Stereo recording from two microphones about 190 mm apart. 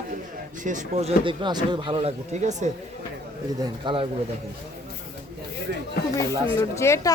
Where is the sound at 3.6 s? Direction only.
25° right (ahead or behind).